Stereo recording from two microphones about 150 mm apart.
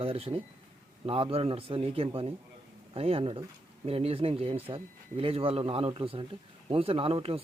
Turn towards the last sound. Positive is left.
turn(degrees=-40)  # may be behind; listen again after turning